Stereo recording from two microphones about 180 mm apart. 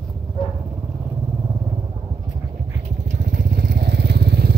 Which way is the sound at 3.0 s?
50° right (ahead or behind).